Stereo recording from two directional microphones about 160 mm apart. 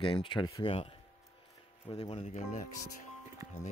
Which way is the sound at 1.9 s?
40° left (ahead or behind).